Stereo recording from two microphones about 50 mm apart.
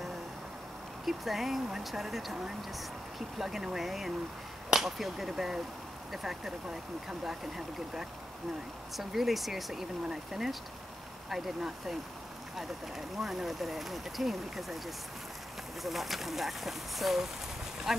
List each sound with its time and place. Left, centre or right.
1.0 s speech: centre
4.6 s a sound: centre
6.1 s speech: centre
13.2 s speech: centre
15.8 s speech: centre